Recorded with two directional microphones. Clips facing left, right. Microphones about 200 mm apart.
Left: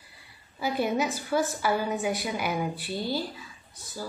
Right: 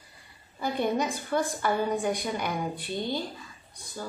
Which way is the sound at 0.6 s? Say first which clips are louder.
Even; 5° left (ahead or behind).